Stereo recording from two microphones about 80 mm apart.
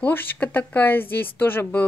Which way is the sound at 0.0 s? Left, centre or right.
Left.